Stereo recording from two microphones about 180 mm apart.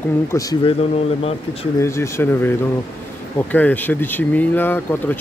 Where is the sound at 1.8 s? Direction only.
15° left (ahead or behind).